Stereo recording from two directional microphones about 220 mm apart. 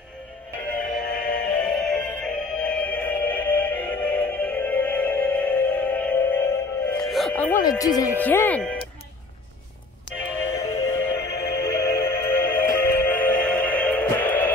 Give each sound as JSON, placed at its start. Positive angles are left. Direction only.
{"t": 0.9, "sound": "music", "side_deg": 5}
{"t": 7.6, "sound": "speech", "side_deg": 15}
{"t": 10.2, "sound": "music", "side_deg": 10}